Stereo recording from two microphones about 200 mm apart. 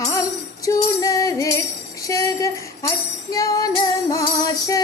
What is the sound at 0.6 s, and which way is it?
Music, 15° left (ahead or behind).